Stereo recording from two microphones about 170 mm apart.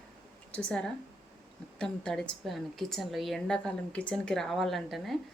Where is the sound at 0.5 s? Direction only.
5° left (ahead or behind).